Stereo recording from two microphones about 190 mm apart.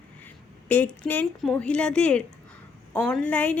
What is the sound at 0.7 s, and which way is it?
A woman's voice, 10° left (ahead or behind).